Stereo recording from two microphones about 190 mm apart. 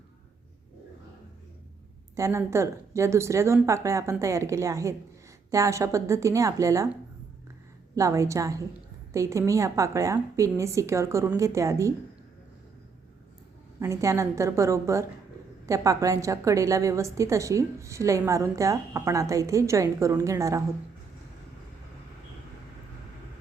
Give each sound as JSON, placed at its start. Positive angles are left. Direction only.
{"t": 2.1, "sound": "a woman's voice", "side_deg": -15}
{"t": 7.9, "sound": "a woman's voice", "side_deg": -15}
{"t": 13.7, "sound": "a woman's voice", "side_deg": -15}